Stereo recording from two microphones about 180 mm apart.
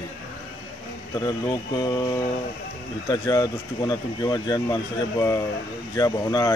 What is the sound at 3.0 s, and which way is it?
Speech, 20° left (ahead or behind).